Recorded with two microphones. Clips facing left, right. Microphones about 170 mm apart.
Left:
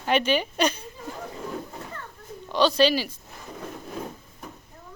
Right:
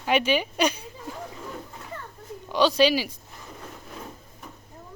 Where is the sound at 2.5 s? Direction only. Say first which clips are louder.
Even; 10° right (ahead or behind).